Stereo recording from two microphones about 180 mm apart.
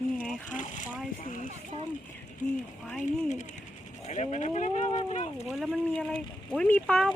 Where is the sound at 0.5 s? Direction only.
45° left (ahead or behind).